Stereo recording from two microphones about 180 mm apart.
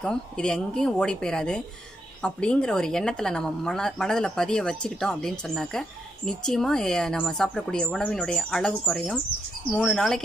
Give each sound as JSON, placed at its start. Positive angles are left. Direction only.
{"t": 0.0, "sound": "speech", "side_deg": 5}